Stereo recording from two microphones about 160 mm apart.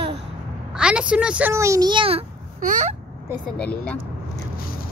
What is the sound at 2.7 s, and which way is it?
Speech, 50° right (ahead or behind).